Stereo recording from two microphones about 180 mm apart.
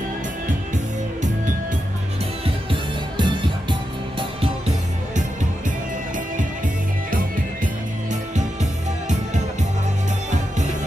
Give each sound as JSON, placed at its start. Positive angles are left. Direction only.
{"t": 2.4, "sound": "music", "side_deg": -25}
{"t": 7.6, "sound": "music", "side_deg": -45}